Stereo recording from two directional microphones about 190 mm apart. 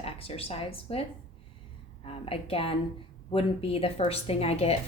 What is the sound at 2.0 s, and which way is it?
Speech, 30° left (ahead or behind).